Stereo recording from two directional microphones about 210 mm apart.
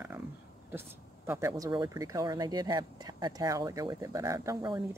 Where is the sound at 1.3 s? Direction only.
10° right (ahead or behind).